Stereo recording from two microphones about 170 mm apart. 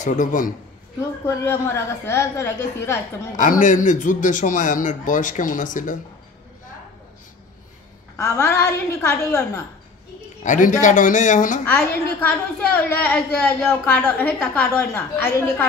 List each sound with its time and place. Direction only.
0.0 s a man's voice: 50° left (ahead or behind)
1.2 s a woman's voice: 15° left (ahead or behind)
3.3 s a man's voice: 50° left (ahead or behind)
8.2 s a woman's voice: 15° left (ahead or behind)
10.4 s a man's voice: 45° left (ahead or behind)
11.6 s a woman's voice: 10° left (ahead or behind)